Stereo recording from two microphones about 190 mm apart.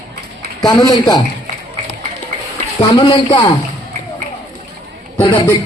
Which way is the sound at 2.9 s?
25° left (ahead or behind).